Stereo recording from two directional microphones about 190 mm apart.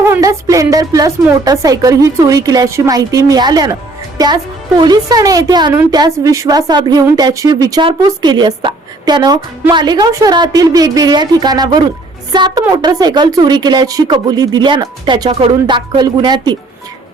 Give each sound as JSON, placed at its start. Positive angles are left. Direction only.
{"t": 0.0, "sound": "speech", "side_deg": -15}
{"t": 4.8, "sound": "a woman's voice", "side_deg": -20}